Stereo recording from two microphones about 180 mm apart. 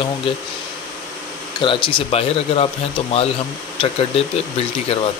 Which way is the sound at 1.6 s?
30° left (ahead or behind).